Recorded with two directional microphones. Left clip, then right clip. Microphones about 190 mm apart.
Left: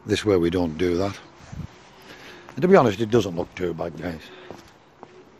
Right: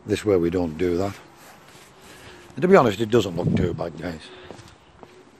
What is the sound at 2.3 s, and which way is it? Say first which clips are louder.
A man's voice: even; 5° right (ahead or behind).